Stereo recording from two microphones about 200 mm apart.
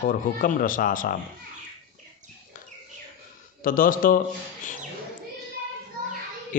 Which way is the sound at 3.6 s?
45° left (ahead or behind).